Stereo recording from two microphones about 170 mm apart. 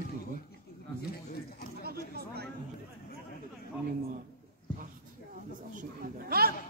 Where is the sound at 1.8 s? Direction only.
70° right (ahead or behind).